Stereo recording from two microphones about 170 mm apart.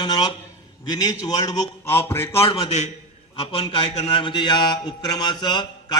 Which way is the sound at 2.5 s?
35° left (ahead or behind).